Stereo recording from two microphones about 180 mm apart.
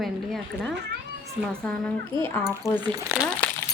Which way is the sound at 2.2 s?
10° left (ahead or behind).